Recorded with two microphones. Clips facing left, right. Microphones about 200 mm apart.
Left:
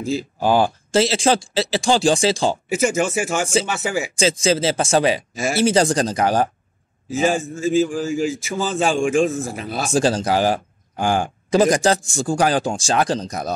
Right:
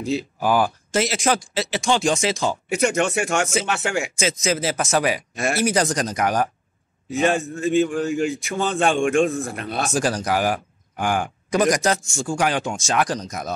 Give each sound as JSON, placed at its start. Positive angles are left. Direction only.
{"t": 0.4, "sound": "speech", "side_deg": 30}
{"t": 2.7, "sound": "a man's voice", "side_deg": 5}
{"t": 4.2, "sound": "speech", "side_deg": 30}
{"t": 5.3, "sound": "speech", "side_deg": 0}
{"t": 5.6, "sound": "speech", "side_deg": 30}
{"t": 7.1, "sound": "a man's voice", "side_deg": 0}
{"t": 9.9, "sound": "a man's voice", "side_deg": 25}